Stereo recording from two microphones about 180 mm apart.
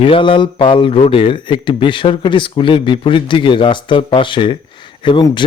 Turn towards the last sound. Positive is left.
turn(degrees=25)  # may be behind; listen again after turning